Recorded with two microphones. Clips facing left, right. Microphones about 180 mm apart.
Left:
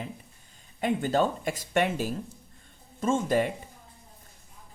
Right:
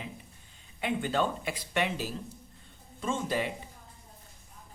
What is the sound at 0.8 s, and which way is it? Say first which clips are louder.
Speech: left 4 dB; 40° left (ahead or behind).